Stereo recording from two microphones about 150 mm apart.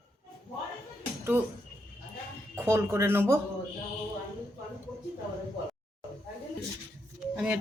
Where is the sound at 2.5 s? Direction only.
15° right (ahead or behind).